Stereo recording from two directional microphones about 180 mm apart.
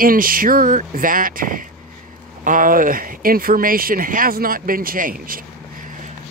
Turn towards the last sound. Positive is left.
turn(degrees=-50)  # may be behind; listen again after turning